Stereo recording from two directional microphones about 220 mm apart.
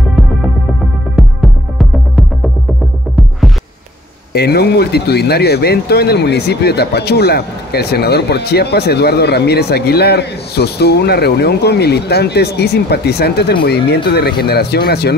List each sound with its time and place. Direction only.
1.1 s music: centre (ahead or behind)
4.3 s speech: 45° left (ahead or behind)